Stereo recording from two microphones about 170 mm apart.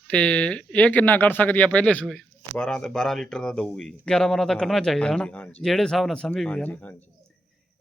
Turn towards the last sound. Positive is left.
turn(degrees=10)  # may be behind; listen again after turning